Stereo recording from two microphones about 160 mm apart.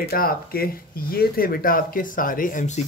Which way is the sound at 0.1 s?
70° left (ahead or behind).